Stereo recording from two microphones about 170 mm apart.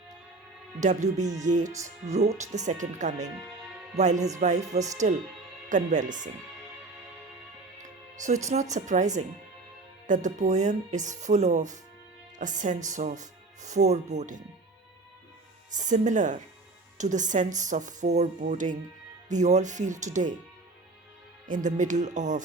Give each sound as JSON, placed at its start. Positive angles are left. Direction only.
{"t": 0.8, "sound": "speech", "side_deg": -45}
{"t": 7.8, "sound": "music", "side_deg": -45}
{"t": 8.7, "sound": "speech", "side_deg": -45}
{"t": 10.1, "sound": "speech", "side_deg": -45}
{"t": 15.7, "sound": "speech", "side_deg": -45}
{"t": 21.4, "sound": "speech", "side_deg": -50}